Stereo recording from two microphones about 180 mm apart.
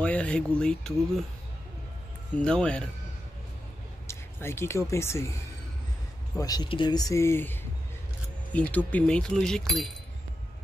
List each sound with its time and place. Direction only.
0.0 s a sound: 5° left (ahead or behind)
0.6 s speech: 5° left (ahead or behind)
2.3 s speech: 5° left (ahead or behind)
4.1 s speech: 15° left (ahead or behind)
6.3 s speech: 20° left (ahead or behind); by 9.8 s centre (ahead or behind)